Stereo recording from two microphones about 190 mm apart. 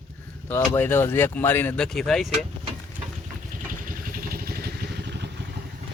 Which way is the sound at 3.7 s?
45° right (ahead or behind).